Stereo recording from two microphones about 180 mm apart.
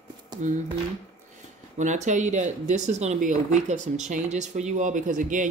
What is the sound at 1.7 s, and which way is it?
Speech, 40° right (ahead or behind).